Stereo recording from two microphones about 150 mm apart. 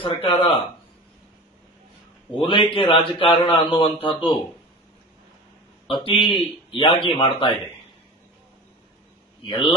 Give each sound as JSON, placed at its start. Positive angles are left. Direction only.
{"t": 0.0, "sound": "a man's voice", "side_deg": 35}
{"t": 2.4, "sound": "a man's voice", "side_deg": 35}
{"t": 6.0, "sound": "a man's voice", "side_deg": 30}
{"t": 9.4, "sound": "a man's voice", "side_deg": 35}